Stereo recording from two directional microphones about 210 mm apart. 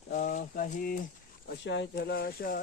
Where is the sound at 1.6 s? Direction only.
55° left (ahead or behind).